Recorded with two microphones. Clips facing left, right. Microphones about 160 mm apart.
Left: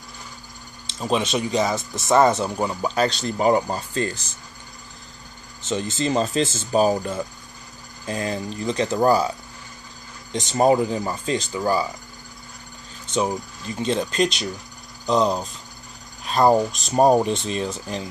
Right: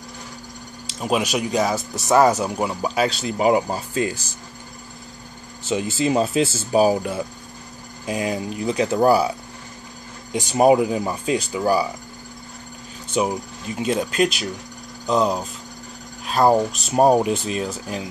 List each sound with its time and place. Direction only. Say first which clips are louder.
0.8 s speech: right 1 dB; 10° right (ahead or behind)
5.6 s speech: right 3 dB; 10° right (ahead or behind)
13.1 s speech: right 1 dB; 10° right (ahead or behind)